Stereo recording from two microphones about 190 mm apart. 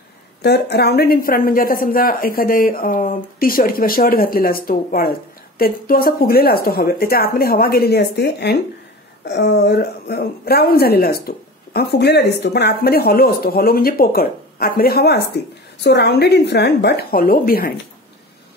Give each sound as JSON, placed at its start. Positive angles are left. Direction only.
{"t": 0.4, "sound": "a woman's voice", "side_deg": 60}